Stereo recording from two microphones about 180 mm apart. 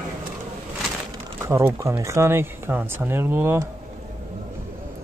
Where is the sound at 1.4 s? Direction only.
15° right (ahead or behind).